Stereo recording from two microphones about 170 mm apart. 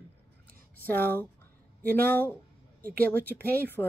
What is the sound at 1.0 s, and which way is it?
Speech, 10° left (ahead or behind).